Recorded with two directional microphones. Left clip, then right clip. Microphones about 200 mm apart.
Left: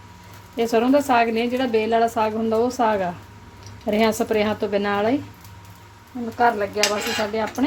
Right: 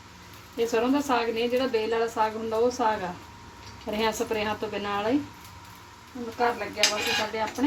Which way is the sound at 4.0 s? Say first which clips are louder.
Left 7 dB; 55° left (ahead or behind).